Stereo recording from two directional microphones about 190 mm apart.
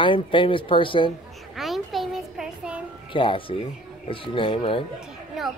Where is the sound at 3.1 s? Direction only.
25° left (ahead or behind).